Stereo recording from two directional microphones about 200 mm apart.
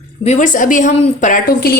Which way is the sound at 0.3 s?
40° left (ahead or behind).